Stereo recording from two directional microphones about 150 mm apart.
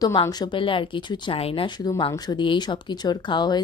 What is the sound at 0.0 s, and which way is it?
A woman's voice, 30° left (ahead or behind).